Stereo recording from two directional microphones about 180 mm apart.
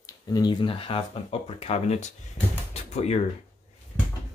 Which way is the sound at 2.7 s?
35° left (ahead or behind).